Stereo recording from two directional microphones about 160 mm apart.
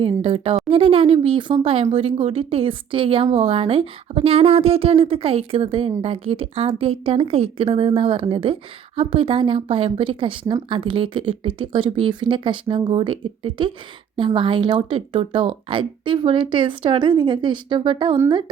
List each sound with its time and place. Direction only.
0.0 s speech: 35° right (ahead or behind)